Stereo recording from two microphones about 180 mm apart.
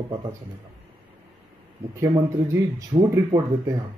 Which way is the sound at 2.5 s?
15° right (ahead or behind).